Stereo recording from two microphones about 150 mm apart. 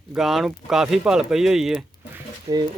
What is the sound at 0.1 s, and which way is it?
Speech, centre (ahead or behind).